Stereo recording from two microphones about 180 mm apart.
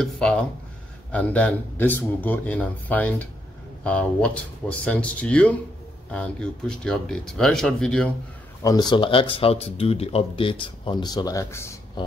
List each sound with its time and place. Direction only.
0.0 s speech: 5° left (ahead or behind)
8.6 s speech: 20° left (ahead or behind)